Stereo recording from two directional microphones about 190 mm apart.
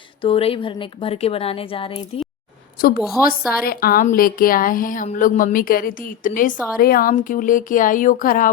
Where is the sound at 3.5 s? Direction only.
50° left (ahead or behind).